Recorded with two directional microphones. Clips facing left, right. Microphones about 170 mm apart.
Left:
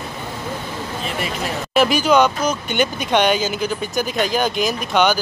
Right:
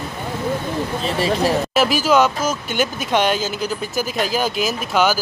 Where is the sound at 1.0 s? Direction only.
35° right (ahead or behind).